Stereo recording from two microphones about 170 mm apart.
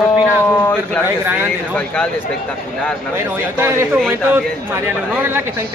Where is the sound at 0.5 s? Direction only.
10° left (ahead or behind).